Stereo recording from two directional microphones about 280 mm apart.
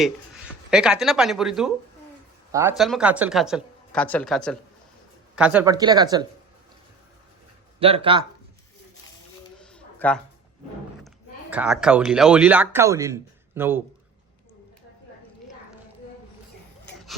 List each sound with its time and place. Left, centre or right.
0.7 s speech: centre
7.8 s speech: centre
9.6 s a sound: centre
11.5 s speech: centre